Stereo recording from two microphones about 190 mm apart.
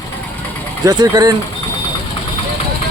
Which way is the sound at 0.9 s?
20° right (ahead or behind).